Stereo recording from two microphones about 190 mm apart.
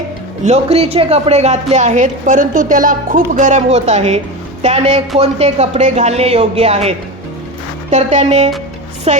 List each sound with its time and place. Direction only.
0.4 s a woman's voice: 35° right (ahead or behind)